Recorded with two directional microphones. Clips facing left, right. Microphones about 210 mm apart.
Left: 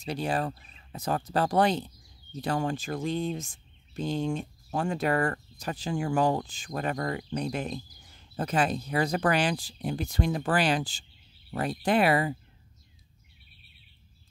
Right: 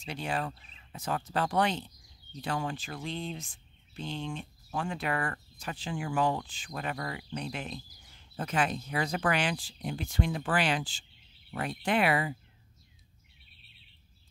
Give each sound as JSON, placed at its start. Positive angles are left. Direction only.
{"t": 0.0, "sound": "speech", "side_deg": 40}